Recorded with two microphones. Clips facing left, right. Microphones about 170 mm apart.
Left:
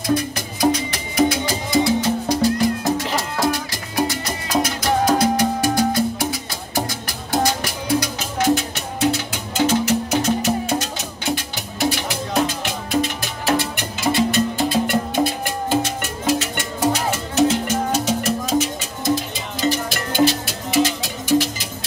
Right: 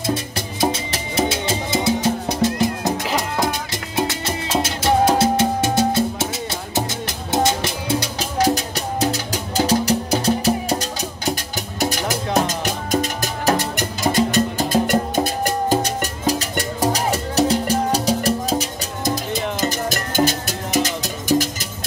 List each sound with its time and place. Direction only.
0.0 s music: 25° right (ahead or behind)
19.7 s music: 45° right (ahead or behind)